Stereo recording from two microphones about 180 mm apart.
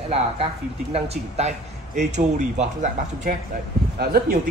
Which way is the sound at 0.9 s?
35° right (ahead or behind).